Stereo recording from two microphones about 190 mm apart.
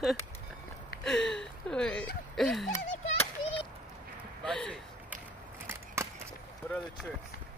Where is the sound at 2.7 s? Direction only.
35° left (ahead or behind).